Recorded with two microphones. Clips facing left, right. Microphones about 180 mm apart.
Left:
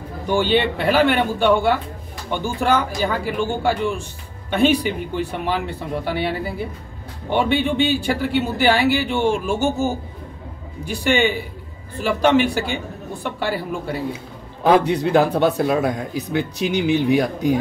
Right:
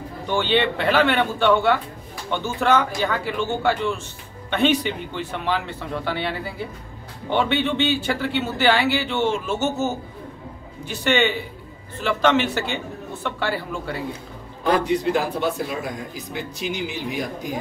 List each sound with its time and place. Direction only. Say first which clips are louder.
0.3 s speech: left 3 dB; 10° left (ahead or behind)
14.7 s speech: left 4 dB; 65° left (ahead or behind)